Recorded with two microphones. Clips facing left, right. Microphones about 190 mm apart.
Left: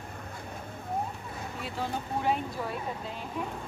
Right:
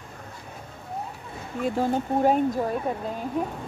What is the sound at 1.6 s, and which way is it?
Speech, 45° right (ahead or behind).